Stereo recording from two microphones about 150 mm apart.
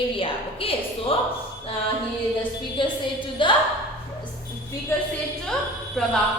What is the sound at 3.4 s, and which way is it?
Speech, 35° left (ahead or behind).